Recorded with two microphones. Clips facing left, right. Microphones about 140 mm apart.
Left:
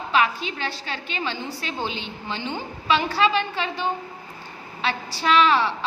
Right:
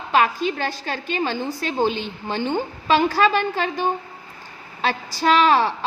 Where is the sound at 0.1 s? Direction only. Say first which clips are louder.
Right 4 dB; 45° right (ahead or behind).